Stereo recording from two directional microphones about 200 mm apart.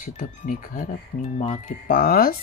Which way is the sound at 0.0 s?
40° left (ahead or behind).